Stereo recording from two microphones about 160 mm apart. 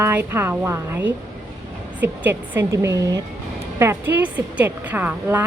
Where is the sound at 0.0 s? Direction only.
15° right (ahead or behind).